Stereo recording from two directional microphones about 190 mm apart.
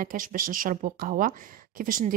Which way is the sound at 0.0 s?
45° right (ahead or behind).